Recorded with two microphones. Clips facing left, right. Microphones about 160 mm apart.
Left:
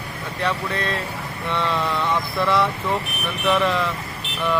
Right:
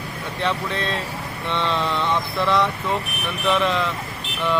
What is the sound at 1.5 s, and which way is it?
Speech, 10° left (ahead or behind).